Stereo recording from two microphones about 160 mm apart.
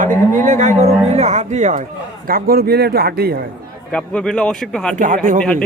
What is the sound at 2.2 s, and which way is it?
Speech, 70° right (ahead or behind).